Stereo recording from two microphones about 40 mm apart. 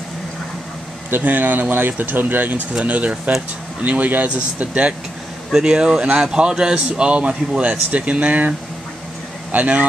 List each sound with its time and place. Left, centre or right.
1.2 s speech: right
2.8 s speech: right
5.5 s a man's voice: centre; by 9.8 s right